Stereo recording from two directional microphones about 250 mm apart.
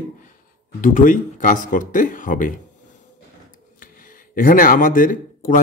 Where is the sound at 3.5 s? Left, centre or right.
Left.